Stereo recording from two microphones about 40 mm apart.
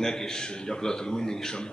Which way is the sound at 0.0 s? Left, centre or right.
Centre.